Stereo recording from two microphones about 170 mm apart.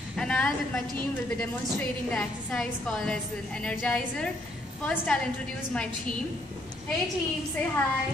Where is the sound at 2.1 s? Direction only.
5° left (ahead or behind).